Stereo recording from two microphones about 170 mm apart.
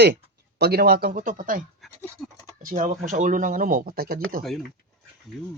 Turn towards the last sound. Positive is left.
turn(degrees=-60)  # may be behind; listen again after turning